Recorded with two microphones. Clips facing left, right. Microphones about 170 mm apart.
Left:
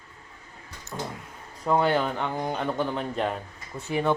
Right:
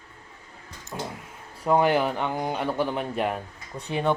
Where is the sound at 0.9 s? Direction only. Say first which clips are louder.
Even; 5° right (ahead or behind).